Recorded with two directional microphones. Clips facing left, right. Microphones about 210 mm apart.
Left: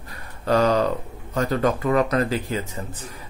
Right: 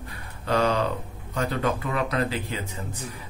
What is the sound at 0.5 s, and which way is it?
Speech, 40° left (ahead or behind).